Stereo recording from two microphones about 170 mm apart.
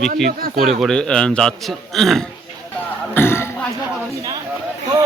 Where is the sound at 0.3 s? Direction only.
60° right (ahead or behind).